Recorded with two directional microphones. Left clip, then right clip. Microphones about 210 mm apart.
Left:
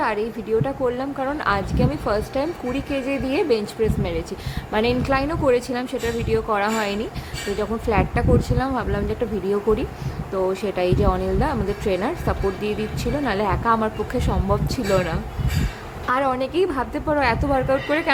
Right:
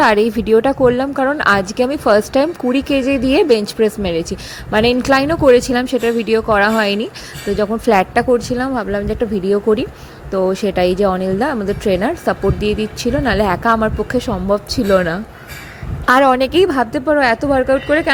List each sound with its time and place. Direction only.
0.0 s a woman's voice: 40° right (ahead or behind)